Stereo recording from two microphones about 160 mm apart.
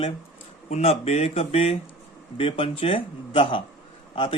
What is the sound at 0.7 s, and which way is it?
Speech, 40° left (ahead or behind).